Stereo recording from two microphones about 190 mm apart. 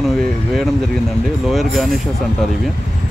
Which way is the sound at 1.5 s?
Centre (ahead or behind).